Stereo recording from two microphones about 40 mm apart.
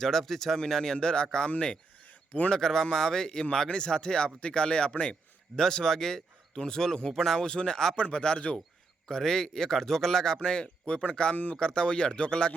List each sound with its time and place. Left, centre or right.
0.0 s a man's voice: centre; by 1.8 s left
2.5 s a man's voice: centre
7.9 s speech: left
9.0 s a man's voice: centre